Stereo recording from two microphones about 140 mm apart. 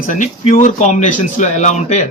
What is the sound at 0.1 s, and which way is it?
Speech, 70° left (ahead or behind).